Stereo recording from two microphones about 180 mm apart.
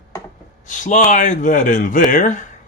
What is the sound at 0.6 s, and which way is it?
Speech, 45° left (ahead or behind).